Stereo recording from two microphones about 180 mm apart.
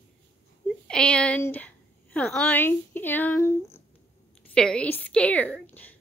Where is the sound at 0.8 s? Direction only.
5° left (ahead or behind).